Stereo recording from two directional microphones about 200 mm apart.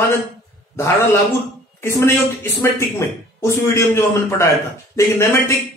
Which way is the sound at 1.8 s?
10° left (ahead or behind).